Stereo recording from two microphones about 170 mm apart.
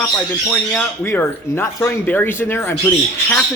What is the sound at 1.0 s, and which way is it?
Speech, 15° left (ahead or behind).